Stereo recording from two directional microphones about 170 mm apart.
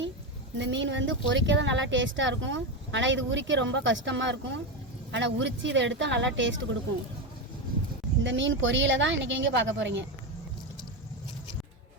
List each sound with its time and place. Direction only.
0.6 s speech: 90° right
8.2 s speech: 90° right